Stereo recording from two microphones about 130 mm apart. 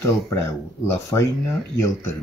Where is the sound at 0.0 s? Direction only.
20° left (ahead or behind).